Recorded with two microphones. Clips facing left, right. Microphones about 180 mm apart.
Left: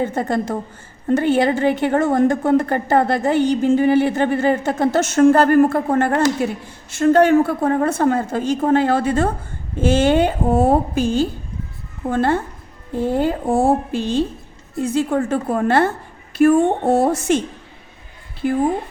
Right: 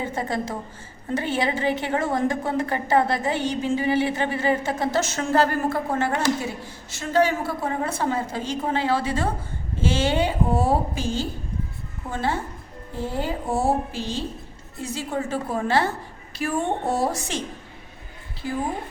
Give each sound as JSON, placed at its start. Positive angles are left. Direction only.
{"t": 0.0, "sound": "a woman's voice", "side_deg": 50}
{"t": 12.0, "sound": "a woman's voice", "side_deg": 55}